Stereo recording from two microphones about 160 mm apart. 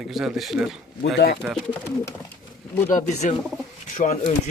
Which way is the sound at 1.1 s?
90° left.